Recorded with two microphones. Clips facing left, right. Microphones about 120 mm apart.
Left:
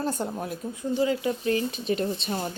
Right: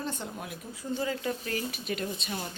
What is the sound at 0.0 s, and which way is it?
Speech, 40° left (ahead or behind).